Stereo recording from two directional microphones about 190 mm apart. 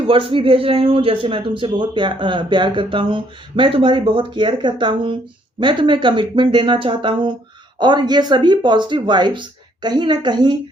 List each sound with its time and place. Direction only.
0.1 s a man's voice: 30° right (ahead or behind)